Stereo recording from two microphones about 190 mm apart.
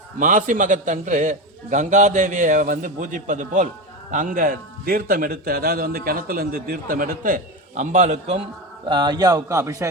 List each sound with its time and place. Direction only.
0.2 s a man's voice: 45° right (ahead or behind)
8.9 s a man's voice: 25° right (ahead or behind)